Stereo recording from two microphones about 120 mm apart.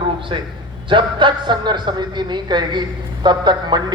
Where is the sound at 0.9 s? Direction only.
40° right (ahead or behind).